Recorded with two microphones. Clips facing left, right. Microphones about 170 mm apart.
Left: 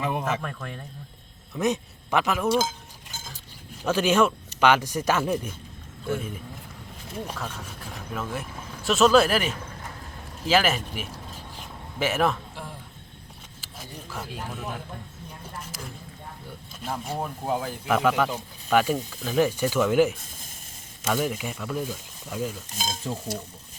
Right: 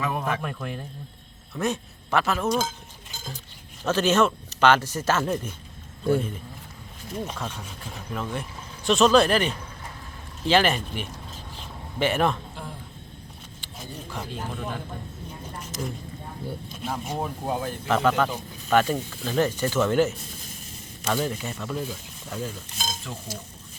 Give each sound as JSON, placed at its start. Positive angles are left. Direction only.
{"t": 0.0, "sound": "a man's voice", "side_deg": 20}
{"t": 0.4, "sound": "speech", "side_deg": -5}
{"t": 1.5, "sound": "speech", "side_deg": 15}
{"t": 3.8, "sound": "speech", "side_deg": 10}
{"t": 7.3, "sound": "speech", "side_deg": 5}
{"t": 11.5, "sound": "a sound", "side_deg": 5}
{"t": 14.1, "sound": "speech", "side_deg": 5}
{"t": 16.8, "sound": "speech", "side_deg": 0}
{"t": 23.1, "sound": "stir", "side_deg": 30}